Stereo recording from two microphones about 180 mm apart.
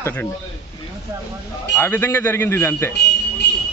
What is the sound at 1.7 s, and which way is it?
Speech, 10° left (ahead or behind).